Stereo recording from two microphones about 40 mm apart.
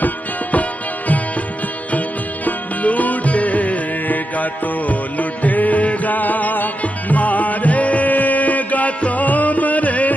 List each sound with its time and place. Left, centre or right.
0.0 s music: left